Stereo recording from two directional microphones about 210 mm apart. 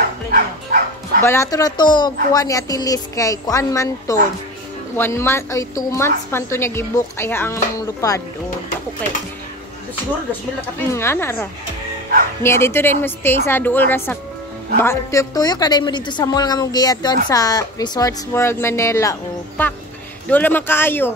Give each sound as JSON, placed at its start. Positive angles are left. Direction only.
{"t": 0.3, "sound": "bow-wow", "side_deg": -45}
{"t": 1.2, "sound": "a woman's voice", "side_deg": 15}
{"t": 10.9, "sound": "a woman's voice", "side_deg": 10}
{"t": 12.4, "sound": "a woman's voice", "side_deg": 10}